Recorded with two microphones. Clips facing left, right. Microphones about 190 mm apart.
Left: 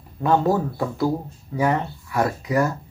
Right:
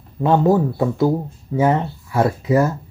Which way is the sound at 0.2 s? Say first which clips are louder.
Right 4 dB; 20° right (ahead or behind).